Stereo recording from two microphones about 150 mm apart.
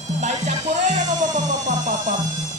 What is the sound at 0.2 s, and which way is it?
Music, 50° right (ahead or behind).